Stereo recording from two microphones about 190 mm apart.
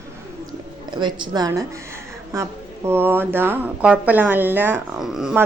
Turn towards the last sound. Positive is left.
turn(degrees=-5)  # may be behind; listen again after turning